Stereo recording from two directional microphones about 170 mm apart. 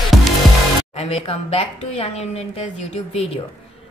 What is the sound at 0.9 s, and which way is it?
A woman's voice, 40° left (ahead or behind).